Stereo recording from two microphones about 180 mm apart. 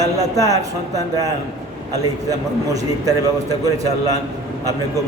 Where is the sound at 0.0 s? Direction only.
20° right (ahead or behind).